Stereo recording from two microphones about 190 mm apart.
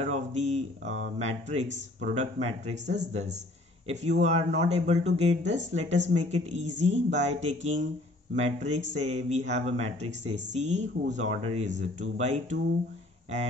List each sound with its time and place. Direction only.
0.0 s speech: 35° right (ahead or behind)